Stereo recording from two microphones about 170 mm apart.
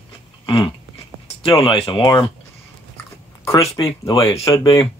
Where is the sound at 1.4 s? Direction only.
30° left (ahead or behind).